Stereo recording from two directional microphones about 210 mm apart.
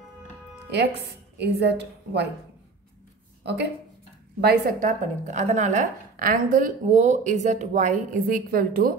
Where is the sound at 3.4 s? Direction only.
55° right (ahead or behind).